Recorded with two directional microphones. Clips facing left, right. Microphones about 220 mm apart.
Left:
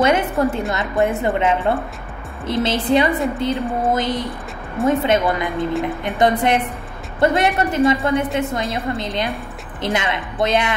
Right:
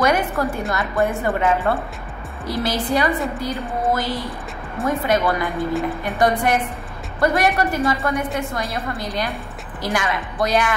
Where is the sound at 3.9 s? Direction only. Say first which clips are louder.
Left 2 dB; 20° left (ahead or behind).